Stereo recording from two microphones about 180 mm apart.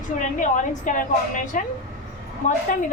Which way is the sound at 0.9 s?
45° left (ahead or behind).